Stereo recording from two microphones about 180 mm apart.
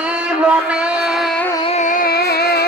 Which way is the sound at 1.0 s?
Centre (ahead or behind).